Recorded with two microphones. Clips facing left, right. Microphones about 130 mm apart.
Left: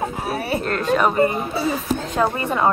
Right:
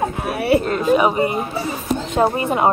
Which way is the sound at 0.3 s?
60° right (ahead or behind).